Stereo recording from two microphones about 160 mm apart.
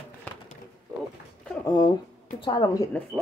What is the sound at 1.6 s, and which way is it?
A woman's voice, 25° left (ahead or behind).